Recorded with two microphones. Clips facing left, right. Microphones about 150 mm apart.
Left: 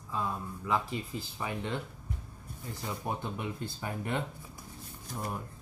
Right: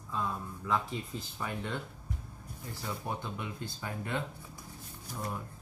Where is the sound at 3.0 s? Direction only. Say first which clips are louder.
Left 5 dB; 25° left (ahead or behind).